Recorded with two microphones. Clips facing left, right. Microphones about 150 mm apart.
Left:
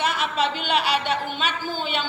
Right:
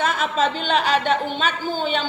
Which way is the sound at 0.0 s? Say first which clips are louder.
Right 3 dB; 45° right (ahead or behind).